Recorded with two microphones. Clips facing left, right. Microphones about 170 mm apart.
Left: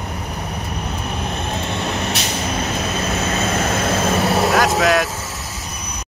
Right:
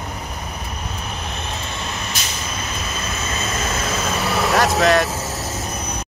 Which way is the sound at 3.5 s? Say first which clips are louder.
Left 5 dB; 55° left (ahead or behind).